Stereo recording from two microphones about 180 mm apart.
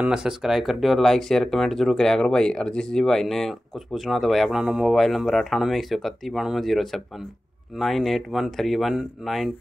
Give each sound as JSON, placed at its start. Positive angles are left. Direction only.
{"t": 0.0, "sound": "speech", "side_deg": -5}